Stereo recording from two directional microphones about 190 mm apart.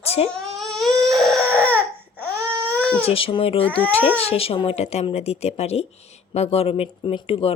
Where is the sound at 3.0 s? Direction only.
30° left (ahead or behind).